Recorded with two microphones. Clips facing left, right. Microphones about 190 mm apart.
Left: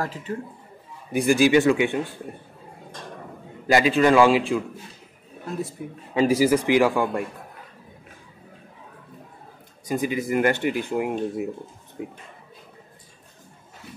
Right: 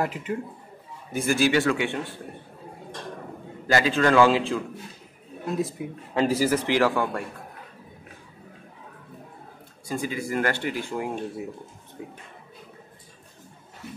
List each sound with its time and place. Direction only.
0.0 s a man's voice: 15° right (ahead or behind)
1.1 s speech: 15° left (ahead or behind)
3.6 s speech: 15° left (ahead or behind)
6.1 s speech: 10° left (ahead or behind)
9.8 s speech: 20° left (ahead or behind)